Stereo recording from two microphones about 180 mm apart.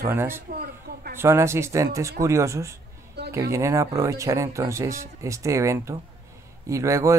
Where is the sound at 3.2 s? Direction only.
65° right (ahead or behind).